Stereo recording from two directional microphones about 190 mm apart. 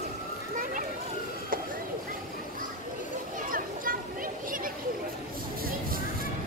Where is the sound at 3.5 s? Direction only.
45° right (ahead or behind).